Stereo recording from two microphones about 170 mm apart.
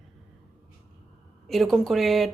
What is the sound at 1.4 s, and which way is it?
Speech, centre (ahead or behind).